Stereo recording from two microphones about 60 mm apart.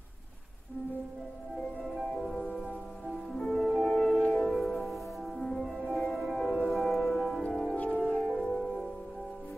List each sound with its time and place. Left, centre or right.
1.8 s music: centre
7.7 s music: left
8.3 s music: centre